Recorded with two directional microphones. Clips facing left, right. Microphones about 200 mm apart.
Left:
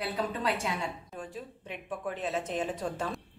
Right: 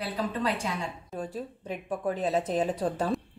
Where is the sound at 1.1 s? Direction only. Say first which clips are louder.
Right 6 dB; 35° right (ahead or behind).